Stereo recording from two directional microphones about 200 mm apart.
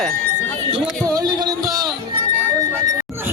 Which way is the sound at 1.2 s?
20° right (ahead or behind).